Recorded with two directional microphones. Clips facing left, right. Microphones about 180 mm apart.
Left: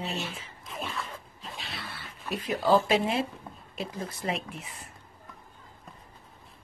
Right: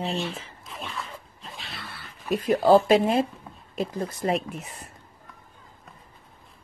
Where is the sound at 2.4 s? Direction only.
45° right (ahead or behind).